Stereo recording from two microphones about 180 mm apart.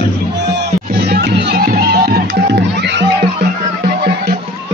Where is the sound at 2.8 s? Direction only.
70° right (ahead or behind).